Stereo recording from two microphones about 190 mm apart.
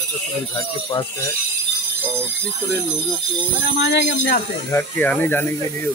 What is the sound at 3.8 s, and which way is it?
Speech, 65° left (ahead or behind).